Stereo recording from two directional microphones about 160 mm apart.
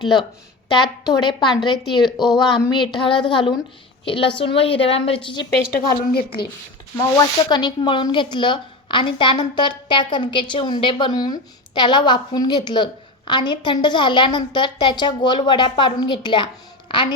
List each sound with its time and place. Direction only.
0.7 s a woman's voice: 25° left (ahead or behind)
5.7 s a woman's voice: 70° left (ahead or behind)
7.4 s a woman's voice: 25° left (ahead or behind)